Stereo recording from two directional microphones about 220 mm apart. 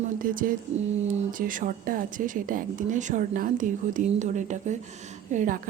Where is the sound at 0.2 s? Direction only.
40° right (ahead or behind).